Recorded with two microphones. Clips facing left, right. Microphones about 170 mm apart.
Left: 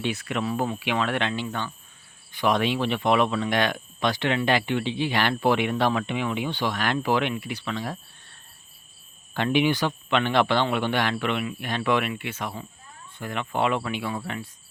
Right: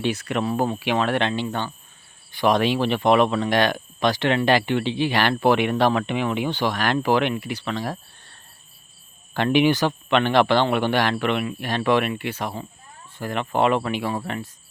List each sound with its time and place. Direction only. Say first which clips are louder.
0.1 s speech: right 3 dB; 40° right (ahead or behind)
4.3 s speech: right 4 dB; 70° right (ahead or behind)
9.3 s speech: right 4 dB; 75° right (ahead or behind)
11.1 s speech: right 4 dB; 60° right (ahead or behind)
11.4 s speech: right 4 dB; 40° right (ahead or behind)